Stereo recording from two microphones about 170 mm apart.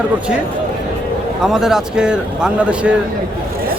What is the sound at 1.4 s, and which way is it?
Speech, 5° right (ahead or behind).